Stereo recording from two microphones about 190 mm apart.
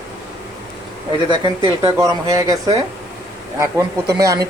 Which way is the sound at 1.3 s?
30° right (ahead or behind).